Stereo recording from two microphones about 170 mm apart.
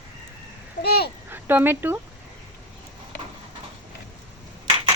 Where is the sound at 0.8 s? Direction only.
65° left (ahead or behind).